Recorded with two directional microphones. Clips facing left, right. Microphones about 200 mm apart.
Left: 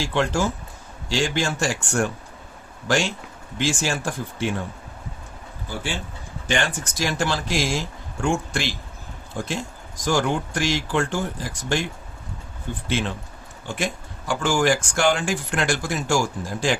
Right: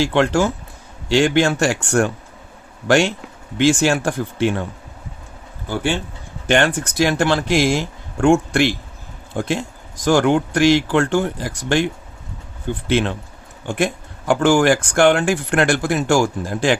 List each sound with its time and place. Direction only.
0.0 s speech: 65° right (ahead or behind)
6.5 s speech: 60° right (ahead or behind)
12.9 s speech: 65° right (ahead or behind)